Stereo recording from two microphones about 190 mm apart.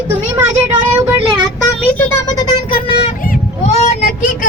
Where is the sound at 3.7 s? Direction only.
40° left (ahead or behind).